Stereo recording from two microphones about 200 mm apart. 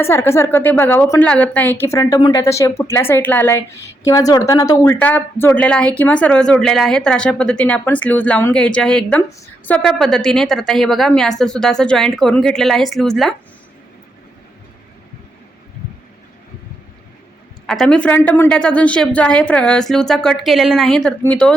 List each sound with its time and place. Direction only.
0.0 s a woman's voice: 10° left (ahead or behind)
17.7 s a woman's voice: 5° left (ahead or behind)